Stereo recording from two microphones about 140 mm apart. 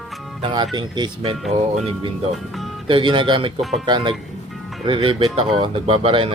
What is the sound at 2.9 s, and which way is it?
Speech, 35° right (ahead or behind).